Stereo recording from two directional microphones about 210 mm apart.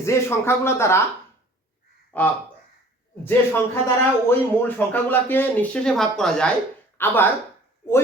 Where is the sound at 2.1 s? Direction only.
5° left (ahead or behind).